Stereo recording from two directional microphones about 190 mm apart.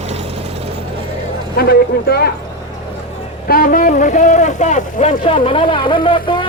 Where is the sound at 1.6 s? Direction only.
55° left (ahead or behind).